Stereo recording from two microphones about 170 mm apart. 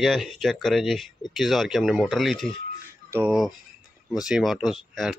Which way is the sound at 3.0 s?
10° right (ahead or behind).